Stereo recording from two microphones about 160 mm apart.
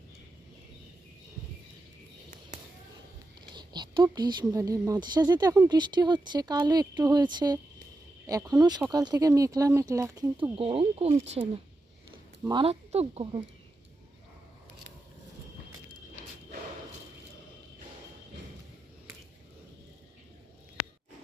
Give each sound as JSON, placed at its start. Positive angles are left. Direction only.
{"t": 3.5, "sound": "a woman's voice", "side_deg": -30}
{"t": 10.6, "sound": "speech", "side_deg": -35}